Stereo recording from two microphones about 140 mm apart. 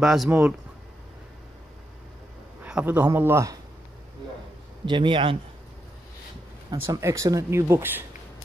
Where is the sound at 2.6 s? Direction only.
10° right (ahead or behind).